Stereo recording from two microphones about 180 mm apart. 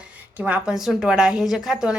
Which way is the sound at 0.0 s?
10° right (ahead or behind).